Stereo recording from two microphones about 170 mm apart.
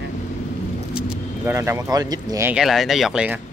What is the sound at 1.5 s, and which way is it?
Speech, 15° right (ahead or behind).